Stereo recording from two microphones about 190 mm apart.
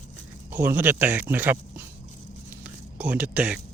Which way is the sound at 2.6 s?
5° right (ahead or behind).